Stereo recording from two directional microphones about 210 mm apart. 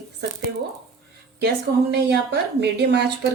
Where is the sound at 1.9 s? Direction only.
50° right (ahead or behind).